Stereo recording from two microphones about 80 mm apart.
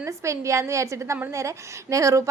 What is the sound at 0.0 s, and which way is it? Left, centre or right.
A woman's voice, right.